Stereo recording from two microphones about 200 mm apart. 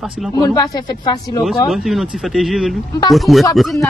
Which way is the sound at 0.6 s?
20° left (ahead or behind).